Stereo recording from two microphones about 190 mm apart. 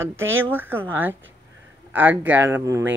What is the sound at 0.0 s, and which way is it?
Speech, 10° right (ahead or behind).